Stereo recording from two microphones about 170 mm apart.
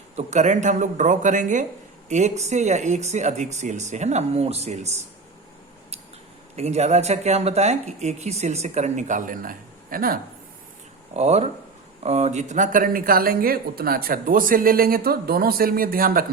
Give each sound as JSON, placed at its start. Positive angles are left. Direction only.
{"t": 0.2, "sound": "speech", "side_deg": -45}
{"t": 6.6, "sound": "speech", "side_deg": -40}
{"t": 11.1, "sound": "speech", "side_deg": -40}